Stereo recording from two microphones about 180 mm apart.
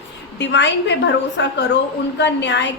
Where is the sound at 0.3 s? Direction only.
75° left (ahead or behind).